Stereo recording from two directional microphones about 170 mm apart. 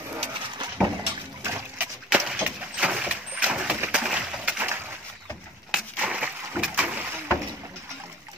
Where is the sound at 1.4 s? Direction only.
15° right (ahead or behind).